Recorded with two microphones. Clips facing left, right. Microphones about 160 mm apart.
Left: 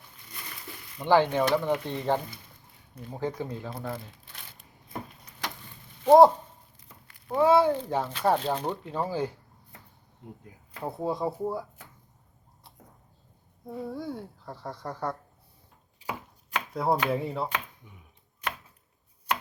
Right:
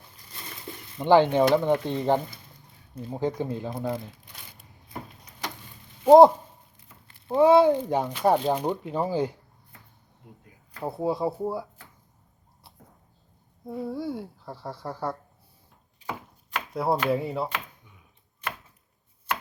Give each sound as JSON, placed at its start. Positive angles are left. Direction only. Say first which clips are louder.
{"t": 0.9, "sound": "speech", "louder": "right 4 dB", "side_deg": -20}
{"t": 6.1, "sound": "speech", "louder": "right 3 dB", "side_deg": -15}
{"t": 10.8, "sound": "speech", "louder": "right 3 dB", "side_deg": -10}
{"t": 13.7, "sound": "speech", "louder": "right 4 dB", "side_deg": -5}
{"t": 16.5, "sound": "chopping", "louder": "right 1 dB", "side_deg": -5}
{"t": 17.1, "sound": "speech", "louder": "right 3 dB", "side_deg": -5}